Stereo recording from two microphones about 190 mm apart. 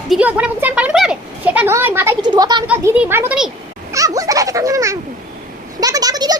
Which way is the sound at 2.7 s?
5° right (ahead or behind).